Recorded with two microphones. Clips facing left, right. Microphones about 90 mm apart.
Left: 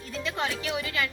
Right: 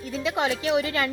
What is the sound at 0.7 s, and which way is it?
Speech, 30° right (ahead or behind).